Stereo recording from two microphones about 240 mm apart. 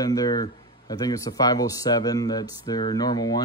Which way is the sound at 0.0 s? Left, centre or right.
Centre.